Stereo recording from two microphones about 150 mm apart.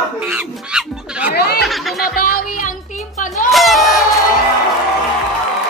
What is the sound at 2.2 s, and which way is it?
Music, 75° left (ahead or behind).